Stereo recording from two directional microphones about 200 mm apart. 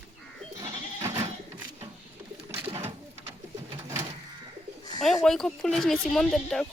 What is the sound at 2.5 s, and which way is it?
Bird, 25° right (ahead or behind).